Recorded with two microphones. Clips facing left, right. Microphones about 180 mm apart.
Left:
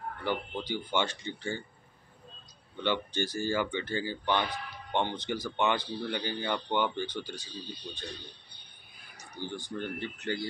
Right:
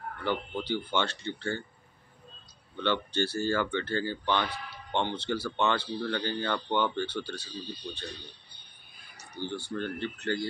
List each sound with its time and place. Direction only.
0.2 s speech: 15° left (ahead or behind)
2.8 s speech: 15° left (ahead or behind)
9.4 s speech: 15° left (ahead or behind)